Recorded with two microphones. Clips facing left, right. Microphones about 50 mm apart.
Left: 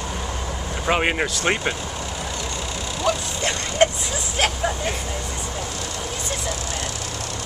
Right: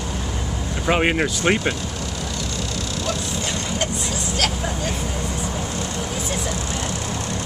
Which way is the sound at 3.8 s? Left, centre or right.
Left.